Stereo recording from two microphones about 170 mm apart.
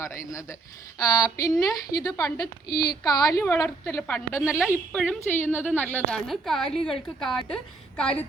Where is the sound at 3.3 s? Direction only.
15° left (ahead or behind); by 6.7 s centre (ahead or behind).